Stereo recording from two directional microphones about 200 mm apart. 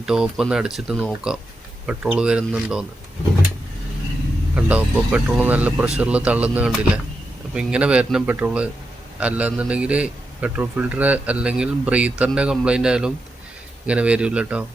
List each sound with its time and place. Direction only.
0.0 s speech: 5° right (ahead or behind)
4.5 s a man's voice: 5° right (ahead or behind)